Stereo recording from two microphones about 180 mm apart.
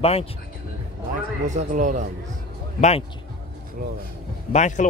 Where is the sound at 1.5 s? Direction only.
45° right (ahead or behind).